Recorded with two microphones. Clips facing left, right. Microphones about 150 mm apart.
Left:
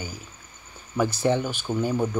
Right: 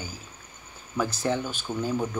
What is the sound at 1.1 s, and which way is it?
Speech, 15° left (ahead or behind).